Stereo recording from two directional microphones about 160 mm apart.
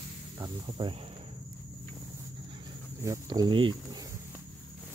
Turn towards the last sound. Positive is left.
turn(degrees=-25)  # may be behind; listen again after turning